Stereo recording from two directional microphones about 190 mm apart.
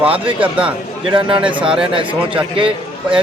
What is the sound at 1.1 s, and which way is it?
Speech, 25° right (ahead or behind).